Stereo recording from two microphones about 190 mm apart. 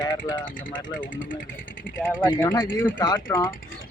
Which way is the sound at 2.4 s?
20° left (ahead or behind).